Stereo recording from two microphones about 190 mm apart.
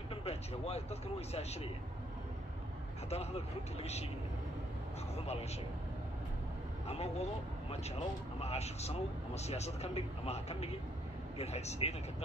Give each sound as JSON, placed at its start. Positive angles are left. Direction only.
{"t": 0.1, "sound": "speech", "side_deg": 30}
{"t": 3.1, "sound": "speech", "side_deg": 35}
{"t": 5.1, "sound": "a sound", "side_deg": 35}
{"t": 6.9, "sound": "speech", "side_deg": 35}